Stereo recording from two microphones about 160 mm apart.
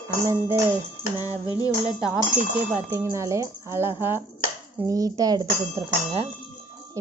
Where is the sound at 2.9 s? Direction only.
20° right (ahead or behind).